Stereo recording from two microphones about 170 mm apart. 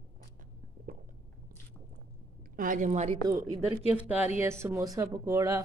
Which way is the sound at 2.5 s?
50° right (ahead or behind).